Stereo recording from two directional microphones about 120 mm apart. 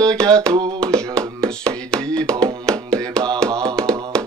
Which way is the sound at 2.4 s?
5° left (ahead or behind).